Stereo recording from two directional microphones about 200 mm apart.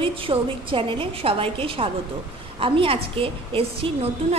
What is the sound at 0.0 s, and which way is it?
A woman's voice, 25° right (ahead or behind).